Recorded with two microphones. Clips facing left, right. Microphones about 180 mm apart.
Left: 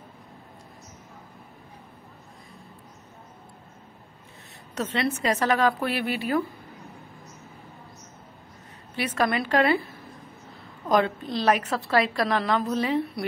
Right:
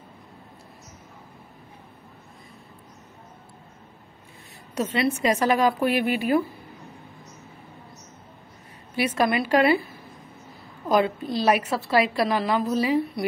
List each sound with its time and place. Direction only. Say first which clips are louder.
4.7 s a woman's voice: right 3 dB; 10° right (ahead or behind)
8.9 s a woman's voice: right 3 dB; 10° right (ahead or behind)
10.9 s a woman's voice: right 1 dB; 10° right (ahead or behind)